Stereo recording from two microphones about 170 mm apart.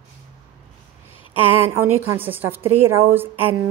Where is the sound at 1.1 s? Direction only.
30° left (ahead or behind).